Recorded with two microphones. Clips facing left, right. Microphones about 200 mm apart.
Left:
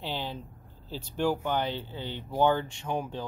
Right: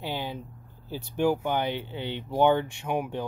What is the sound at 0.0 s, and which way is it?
Speech, 10° right (ahead or behind).